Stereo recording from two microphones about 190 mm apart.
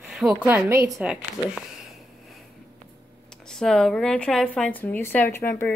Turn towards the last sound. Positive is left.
turn(degrees=10)  # may be behind; listen again after turning